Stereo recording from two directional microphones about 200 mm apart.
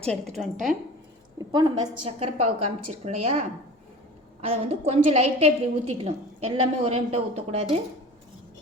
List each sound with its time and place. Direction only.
0.1 s a woman's voice: centre (ahead or behind)
1.7 s a woman's voice: 30° right (ahead or behind)